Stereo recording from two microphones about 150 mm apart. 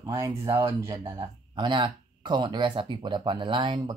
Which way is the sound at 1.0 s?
30° right (ahead or behind).